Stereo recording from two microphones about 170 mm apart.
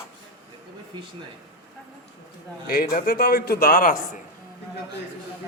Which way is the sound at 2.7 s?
60° left (ahead or behind).